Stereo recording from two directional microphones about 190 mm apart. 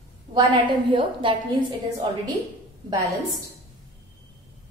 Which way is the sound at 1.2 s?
25° right (ahead or behind).